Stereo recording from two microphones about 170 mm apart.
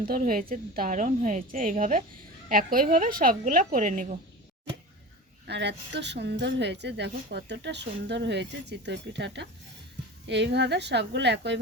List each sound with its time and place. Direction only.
0.0 s a woman's voice: 55° right (ahead or behind)
5.5 s speech: 90° right